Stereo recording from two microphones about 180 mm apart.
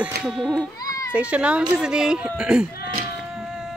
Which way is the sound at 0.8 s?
20° left (ahead or behind).